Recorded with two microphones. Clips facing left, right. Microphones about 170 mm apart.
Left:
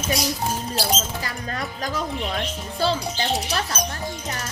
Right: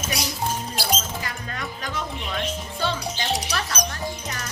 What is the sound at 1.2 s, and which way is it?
Speech, 35° left (ahead or behind).